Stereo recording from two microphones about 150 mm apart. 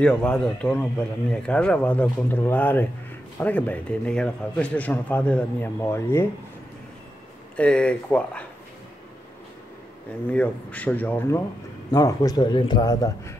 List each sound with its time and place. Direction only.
0.0 s a man's voice: 5° left (ahead or behind)
7.5 s a man's voice: 10° left (ahead or behind)
10.3 s a man's voice: 10° left (ahead or behind)
11.9 s a man's voice: 25° left (ahead or behind)